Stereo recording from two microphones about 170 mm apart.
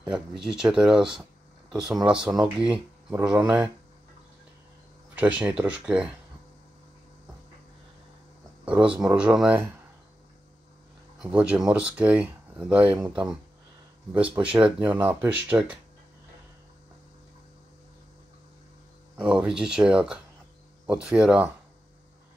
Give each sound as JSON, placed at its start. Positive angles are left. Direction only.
{"t": 0.0, "sound": "speech", "side_deg": -5}
{"t": 5.1, "sound": "speech", "side_deg": -5}
{"t": 8.6, "sound": "speech", "side_deg": -5}
{"t": 11.1, "sound": "speech", "side_deg": -5}
{"t": 14.5, "sound": "speech", "side_deg": -5}
{"t": 19.1, "sound": "speech", "side_deg": -5}